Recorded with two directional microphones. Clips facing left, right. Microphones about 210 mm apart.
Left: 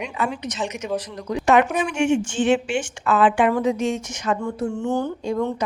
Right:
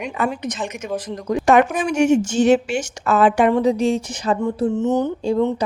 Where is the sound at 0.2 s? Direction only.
50° right (ahead or behind); by 4.4 s 35° right (ahead or behind).